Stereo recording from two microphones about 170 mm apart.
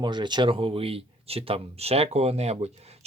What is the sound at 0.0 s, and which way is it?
Speech, 25° right (ahead or behind).